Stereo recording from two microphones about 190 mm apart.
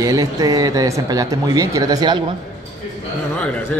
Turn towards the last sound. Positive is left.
turn(degrees=5)  # may be behind; listen again after turning